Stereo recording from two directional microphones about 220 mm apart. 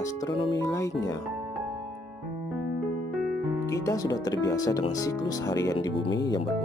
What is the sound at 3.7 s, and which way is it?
Speech, 15° left (ahead or behind).